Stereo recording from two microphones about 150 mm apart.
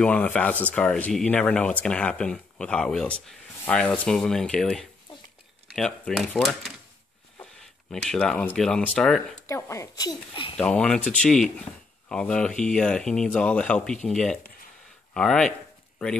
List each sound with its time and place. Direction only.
0.0 s speech: 10° left (ahead or behind)
9.5 s speech: 20° left (ahead or behind)
10.6 s speech: 5° left (ahead or behind)